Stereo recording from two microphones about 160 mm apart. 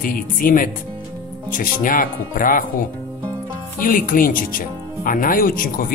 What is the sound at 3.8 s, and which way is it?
Speech, 60° left (ahead or behind).